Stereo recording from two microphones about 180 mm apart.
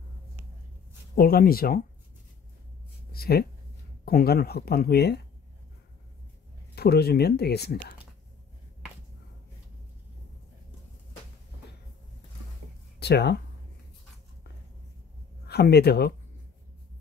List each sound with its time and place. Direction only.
1.1 s speech: 55° left (ahead or behind)
3.1 s a sound: 60° left (ahead or behind)
4.0 s speech: 60° left (ahead or behind)
6.7 s speech: 60° left (ahead or behind)
13.0 s speech: 70° left (ahead or behind)
15.4 s speech: 60° left (ahead or behind)